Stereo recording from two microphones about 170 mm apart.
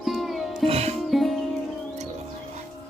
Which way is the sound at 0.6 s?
35° right (ahead or behind).